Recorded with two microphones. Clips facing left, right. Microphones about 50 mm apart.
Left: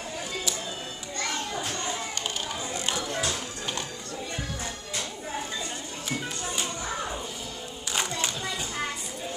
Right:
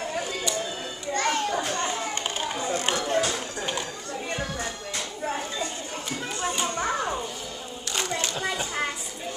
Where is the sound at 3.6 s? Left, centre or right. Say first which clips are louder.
Right 4 dB; centre.